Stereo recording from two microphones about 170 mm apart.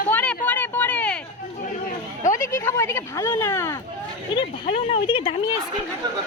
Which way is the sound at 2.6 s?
15° left (ahead or behind).